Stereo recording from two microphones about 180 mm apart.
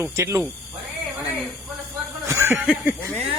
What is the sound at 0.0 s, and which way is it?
Speech, 15° right (ahead or behind).